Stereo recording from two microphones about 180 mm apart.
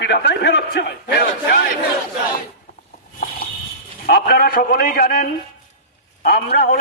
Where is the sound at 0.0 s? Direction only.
75° left (ahead or behind).